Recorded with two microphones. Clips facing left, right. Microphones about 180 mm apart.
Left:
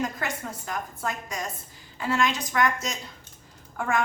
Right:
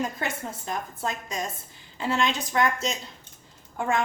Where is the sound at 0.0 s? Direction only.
25° right (ahead or behind).